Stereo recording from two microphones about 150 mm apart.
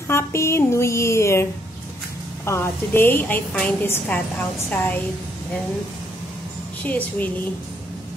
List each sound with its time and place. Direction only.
0.1 s a woman's voice: 20° left (ahead or behind)
6.8 s a woman's voice: 10° left (ahead or behind)